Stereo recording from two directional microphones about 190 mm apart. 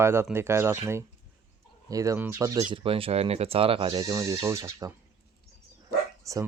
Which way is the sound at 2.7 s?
30° right (ahead or behind).